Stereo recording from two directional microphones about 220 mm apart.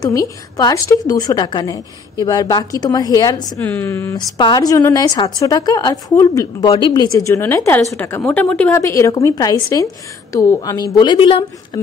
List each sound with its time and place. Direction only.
0.0 s a woman's voice: 15° left (ahead or behind)